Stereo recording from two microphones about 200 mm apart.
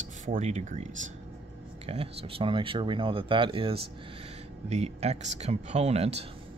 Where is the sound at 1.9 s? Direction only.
30° right (ahead or behind).